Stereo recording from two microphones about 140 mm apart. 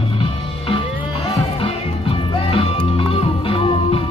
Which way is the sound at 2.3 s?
40° left (ahead or behind).